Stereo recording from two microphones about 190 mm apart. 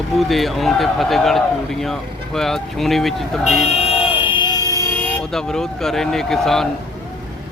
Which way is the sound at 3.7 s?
30° left (ahead or behind).